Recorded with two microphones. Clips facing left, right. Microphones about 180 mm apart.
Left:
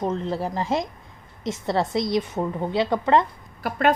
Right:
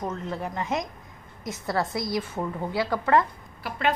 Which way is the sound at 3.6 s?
45° left (ahead or behind).